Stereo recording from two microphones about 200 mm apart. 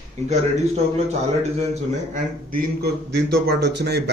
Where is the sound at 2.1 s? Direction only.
45° right (ahead or behind).